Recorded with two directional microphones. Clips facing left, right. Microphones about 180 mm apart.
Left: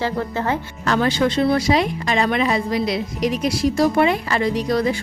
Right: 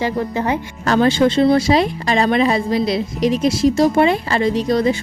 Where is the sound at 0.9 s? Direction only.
30° right (ahead or behind).